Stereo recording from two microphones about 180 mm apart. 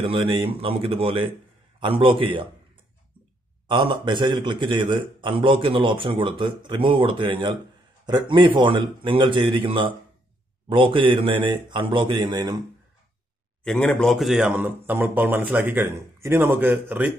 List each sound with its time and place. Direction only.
0.0 s a man's voice: 30° right (ahead or behind)
3.6 s a man's voice: 25° right (ahead or behind)
13.7 s a man's voice: 5° left (ahead or behind)